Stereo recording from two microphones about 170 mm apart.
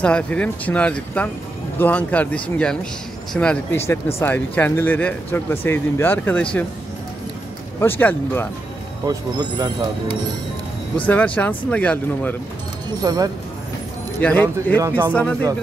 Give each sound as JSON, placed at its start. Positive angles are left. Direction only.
{"t": 0.0, "sound": "speech", "side_deg": 5}
{"t": 7.8, "sound": "speech", "side_deg": 10}
{"t": 9.0, "sound": "speech", "side_deg": -25}
{"t": 11.1, "sound": "speech", "side_deg": 10}
{"t": 13.0, "sound": "speech", "side_deg": -25}
{"t": 14.2, "sound": "speech", "side_deg": 10}
{"t": 14.8, "sound": "speech", "side_deg": -10}